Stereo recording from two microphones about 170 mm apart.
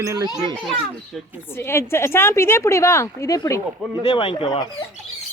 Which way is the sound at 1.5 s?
15° left (ahead or behind).